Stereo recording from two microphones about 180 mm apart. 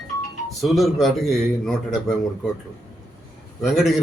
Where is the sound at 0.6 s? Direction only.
Centre (ahead or behind).